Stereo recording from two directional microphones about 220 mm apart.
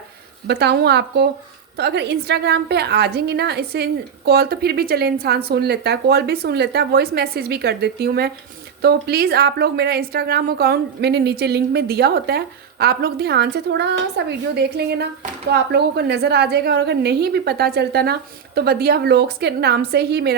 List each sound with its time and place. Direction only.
0.4 s a woman's voice: 50° right (ahead or behind)